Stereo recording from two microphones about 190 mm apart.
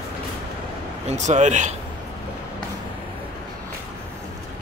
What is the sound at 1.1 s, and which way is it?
Speech, 40° right (ahead or behind).